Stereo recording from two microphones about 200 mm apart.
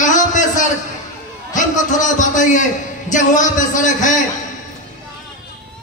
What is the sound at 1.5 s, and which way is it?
A man's voice, 40° left (ahead or behind).